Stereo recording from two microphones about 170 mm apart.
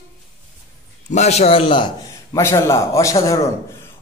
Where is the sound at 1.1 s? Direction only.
40° left (ahead or behind).